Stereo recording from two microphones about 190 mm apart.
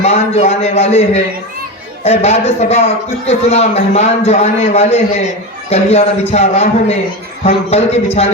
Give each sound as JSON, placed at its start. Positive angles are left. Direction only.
{"t": 0.0, "sound": "a man's voice", "side_deg": 35}